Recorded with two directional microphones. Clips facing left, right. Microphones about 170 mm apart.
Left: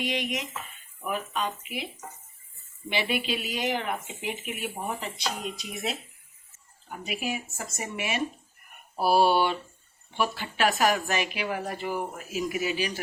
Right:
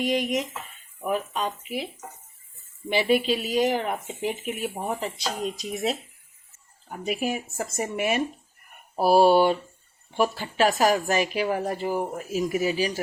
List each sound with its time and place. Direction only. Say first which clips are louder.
0.0 s speech: right 6 dB; 40° right (ahead or behind)
2.9 s speech: right 7 dB; 40° right (ahead or behind)